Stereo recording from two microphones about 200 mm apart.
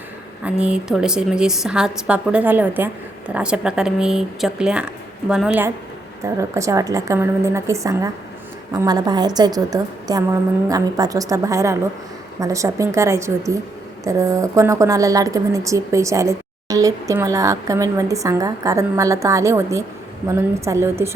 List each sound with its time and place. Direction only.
0.4 s a woman's voice: 5° right (ahead or behind)